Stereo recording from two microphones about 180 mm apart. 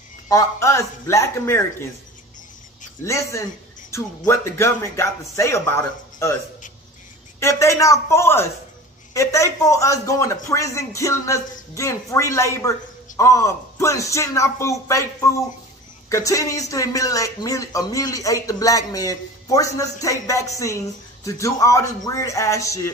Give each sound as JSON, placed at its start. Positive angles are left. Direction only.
{"t": 0.3, "sound": "a man's voice", "side_deg": 15}
{"t": 3.0, "sound": "a man's voice", "side_deg": 15}